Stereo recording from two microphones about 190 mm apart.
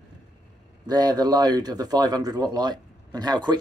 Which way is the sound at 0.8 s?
20° right (ahead or behind).